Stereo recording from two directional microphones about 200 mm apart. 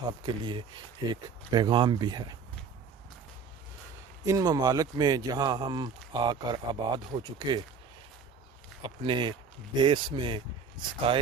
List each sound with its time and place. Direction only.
0.2 s speech: 25° right (ahead or behind)
4.2 s speech: 15° right (ahead or behind)
8.8 s speech: 25° right (ahead or behind)